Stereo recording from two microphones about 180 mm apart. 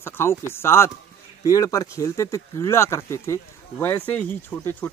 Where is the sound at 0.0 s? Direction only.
15° left (ahead or behind).